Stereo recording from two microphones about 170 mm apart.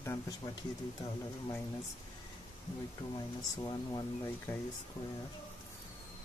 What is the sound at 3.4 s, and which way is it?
Speech, 25° left (ahead or behind).